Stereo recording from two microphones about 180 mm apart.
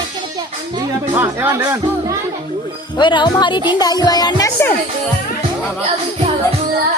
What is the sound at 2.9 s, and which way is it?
Speech, 25° left (ahead or behind).